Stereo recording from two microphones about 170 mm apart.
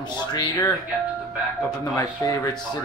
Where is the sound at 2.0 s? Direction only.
20° left (ahead or behind).